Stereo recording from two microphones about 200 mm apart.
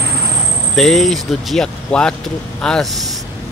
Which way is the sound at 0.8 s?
Centre (ahead or behind).